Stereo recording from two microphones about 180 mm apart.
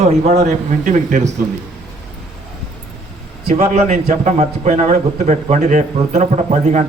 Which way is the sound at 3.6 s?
45° right (ahead or behind).